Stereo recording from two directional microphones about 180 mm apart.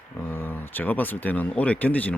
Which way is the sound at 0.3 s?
10° left (ahead or behind).